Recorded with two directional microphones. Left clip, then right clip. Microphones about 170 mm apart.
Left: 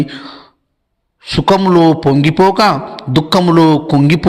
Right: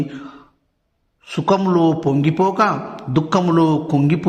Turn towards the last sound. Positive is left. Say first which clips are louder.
# left 6 dB
turn(degrees=20)  # may be behind; listen again after turning